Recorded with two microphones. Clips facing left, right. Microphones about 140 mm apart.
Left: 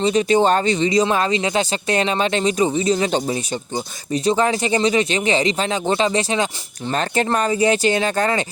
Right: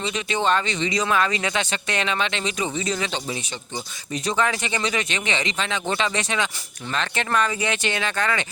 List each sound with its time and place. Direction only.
0.0 s speech: 40° left (ahead or behind)